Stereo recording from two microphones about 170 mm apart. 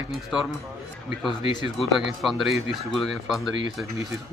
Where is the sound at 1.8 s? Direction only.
Centre (ahead or behind).